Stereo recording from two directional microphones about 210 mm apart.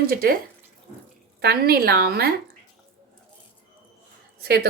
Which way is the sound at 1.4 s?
45° right (ahead or behind).